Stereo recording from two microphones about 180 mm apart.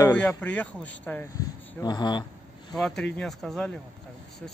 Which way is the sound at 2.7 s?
Centre (ahead or behind).